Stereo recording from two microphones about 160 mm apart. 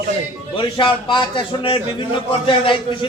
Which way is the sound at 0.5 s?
30° left (ahead or behind).